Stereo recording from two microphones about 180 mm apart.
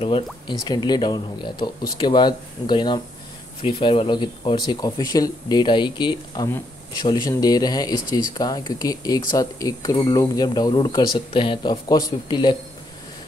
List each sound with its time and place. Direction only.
0.0 s speech: 30° left (ahead or behind)